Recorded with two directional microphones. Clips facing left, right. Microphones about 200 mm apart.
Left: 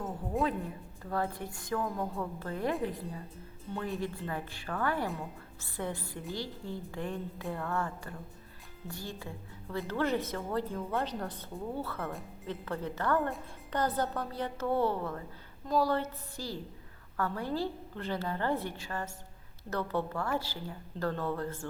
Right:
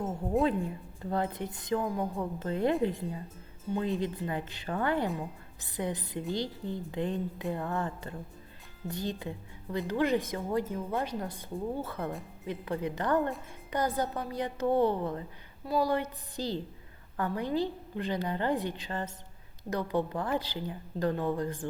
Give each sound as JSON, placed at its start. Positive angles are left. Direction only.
{"t": 1.1, "sound": "a woman's voice", "side_deg": -20}